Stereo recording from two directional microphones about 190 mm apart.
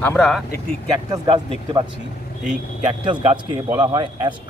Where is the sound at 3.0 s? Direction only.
25° right (ahead or behind).